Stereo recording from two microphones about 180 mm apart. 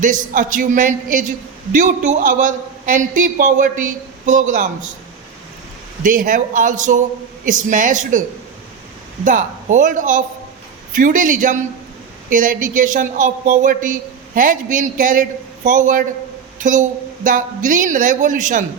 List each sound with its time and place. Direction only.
0.0 s speech: 45° right (ahead or behind)
6.0 s speech: 50° right (ahead or behind)
9.2 s speech: 45° right (ahead or behind)